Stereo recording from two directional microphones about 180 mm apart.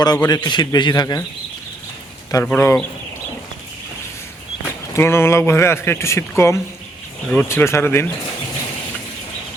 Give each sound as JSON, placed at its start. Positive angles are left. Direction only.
{"t": 0.0, "sound": "a man's voice", "side_deg": 20}
{"t": 2.3, "sound": "speech", "side_deg": 10}
{"t": 4.9, "sound": "speech", "side_deg": 15}